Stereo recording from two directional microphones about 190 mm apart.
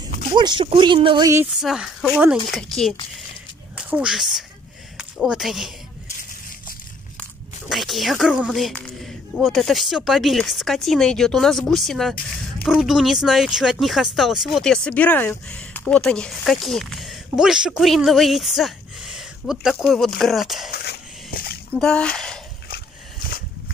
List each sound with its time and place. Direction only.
0.3 s speech: 25° right (ahead or behind)
1.6 s speech: 5° right (ahead or behind)
7.7 s speech: centre (ahead or behind)
20.7 s a sound: 50° left (ahead or behind)
21.7 s speech: 5° left (ahead or behind)
22.7 s dog: 50° left (ahead or behind)